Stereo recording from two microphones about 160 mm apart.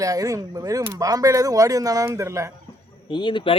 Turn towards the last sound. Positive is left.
turn(degrees=30)  # may be behind; listen again after turning